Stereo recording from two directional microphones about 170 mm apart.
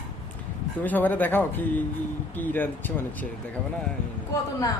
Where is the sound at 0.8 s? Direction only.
10° left (ahead or behind).